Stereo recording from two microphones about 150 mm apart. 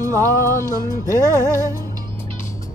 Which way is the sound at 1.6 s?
25° right (ahead or behind).